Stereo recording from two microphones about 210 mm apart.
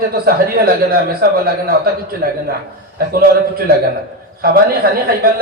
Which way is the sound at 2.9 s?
45° right (ahead or behind).